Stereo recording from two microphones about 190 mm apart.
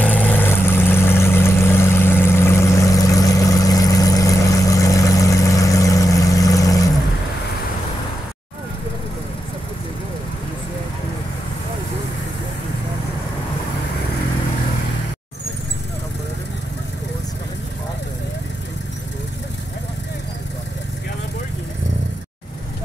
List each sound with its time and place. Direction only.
0.0 s vehicle: 10° left (ahead or behind)